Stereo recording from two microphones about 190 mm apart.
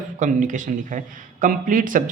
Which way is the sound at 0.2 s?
40° right (ahead or behind).